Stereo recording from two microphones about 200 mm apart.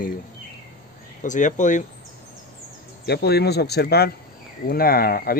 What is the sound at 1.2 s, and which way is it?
Speech, 40° left (ahead or behind).